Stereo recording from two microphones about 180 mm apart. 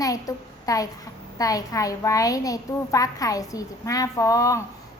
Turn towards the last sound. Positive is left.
turn(degrees=20)  # may be behind; listen again after turning